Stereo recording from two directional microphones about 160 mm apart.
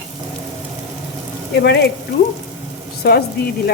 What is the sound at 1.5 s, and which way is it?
Speech, 90° left.